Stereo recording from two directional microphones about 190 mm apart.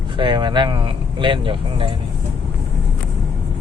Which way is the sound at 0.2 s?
25° right (ahead or behind).